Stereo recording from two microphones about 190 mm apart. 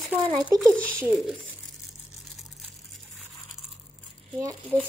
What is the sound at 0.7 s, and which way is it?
Speech, 5° left (ahead or behind).